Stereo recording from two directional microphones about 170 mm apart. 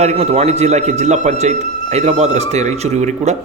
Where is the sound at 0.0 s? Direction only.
40° right (ahead or behind).